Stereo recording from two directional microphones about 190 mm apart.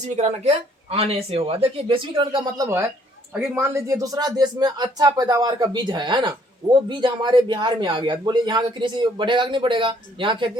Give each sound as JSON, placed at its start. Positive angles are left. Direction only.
{"t": 0.0, "sound": "speech", "side_deg": -35}